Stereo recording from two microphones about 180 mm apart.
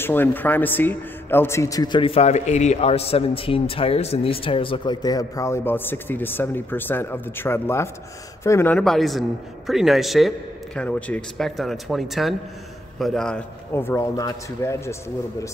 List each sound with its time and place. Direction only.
0.0 s a man's voice: 10° left (ahead or behind)
8.7 s a man's voice: centre (ahead or behind)